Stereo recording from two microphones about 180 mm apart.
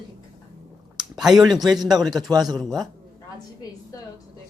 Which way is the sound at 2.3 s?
20° right (ahead or behind).